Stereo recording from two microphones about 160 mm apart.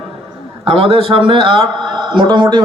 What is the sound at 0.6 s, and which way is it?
A man's voice, 35° right (ahead or behind).